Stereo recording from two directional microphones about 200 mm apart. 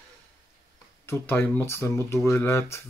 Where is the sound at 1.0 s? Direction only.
10° left (ahead or behind).